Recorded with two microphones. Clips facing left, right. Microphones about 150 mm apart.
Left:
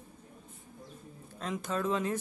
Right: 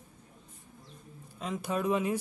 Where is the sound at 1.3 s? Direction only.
5° right (ahead or behind).